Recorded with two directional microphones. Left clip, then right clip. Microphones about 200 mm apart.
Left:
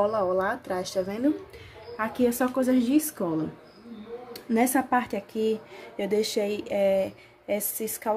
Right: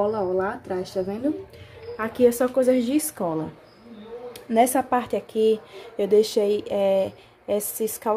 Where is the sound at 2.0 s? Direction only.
5° right (ahead or behind).